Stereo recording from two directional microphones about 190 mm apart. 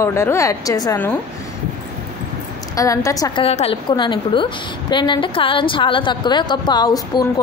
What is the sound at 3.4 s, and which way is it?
A woman's voice, 30° left (ahead or behind).